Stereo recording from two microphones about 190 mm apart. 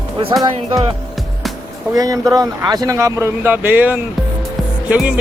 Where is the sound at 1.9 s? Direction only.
20° right (ahead or behind).